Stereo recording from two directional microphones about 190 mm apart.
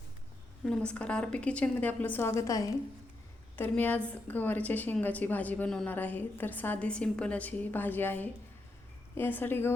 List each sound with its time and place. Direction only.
0.6 s a woman's voice: 5° left (ahead or behind)